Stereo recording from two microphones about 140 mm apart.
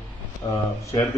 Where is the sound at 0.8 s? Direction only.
25° left (ahead or behind).